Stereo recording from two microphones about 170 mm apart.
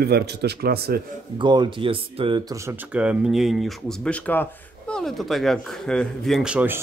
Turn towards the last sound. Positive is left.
turn(degrees=-10)  # may be behind; listen again after turning